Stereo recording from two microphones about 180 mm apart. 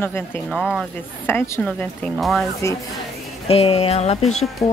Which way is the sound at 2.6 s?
15° left (ahead or behind).